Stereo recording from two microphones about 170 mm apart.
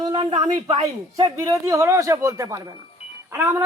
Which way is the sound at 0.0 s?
30° right (ahead or behind).